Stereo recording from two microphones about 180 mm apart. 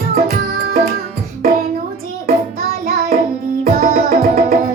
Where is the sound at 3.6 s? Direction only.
55° right (ahead or behind).